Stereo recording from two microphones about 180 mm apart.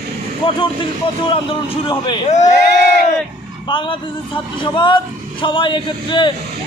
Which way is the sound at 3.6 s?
25° left (ahead or behind).